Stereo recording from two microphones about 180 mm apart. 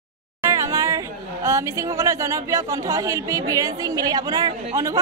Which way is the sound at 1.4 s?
15° right (ahead or behind).